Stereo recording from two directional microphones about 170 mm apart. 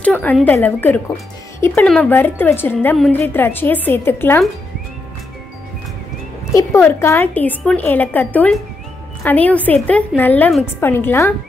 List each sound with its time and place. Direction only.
0.0 s a woman's voice: 10° left (ahead or behind)
6.5 s a woman's voice: 15° left (ahead or behind)